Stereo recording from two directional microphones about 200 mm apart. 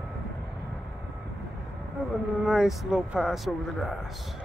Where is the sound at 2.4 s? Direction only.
5° right (ahead or behind).